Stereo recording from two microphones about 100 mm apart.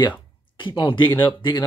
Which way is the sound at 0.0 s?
55° left (ahead or behind).